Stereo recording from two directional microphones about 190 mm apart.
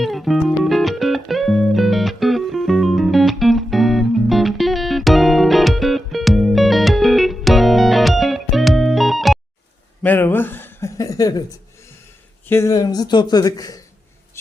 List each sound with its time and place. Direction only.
0.0 s music: centre (ahead or behind)
10.0 s chuckle: 10° left (ahead or behind)
12.5 s a man's voice: 15° left (ahead or behind)